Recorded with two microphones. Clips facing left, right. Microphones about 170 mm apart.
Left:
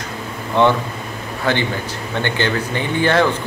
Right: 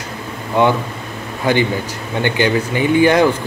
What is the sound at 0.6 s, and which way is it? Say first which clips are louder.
Speech: even; 10° right (ahead or behind).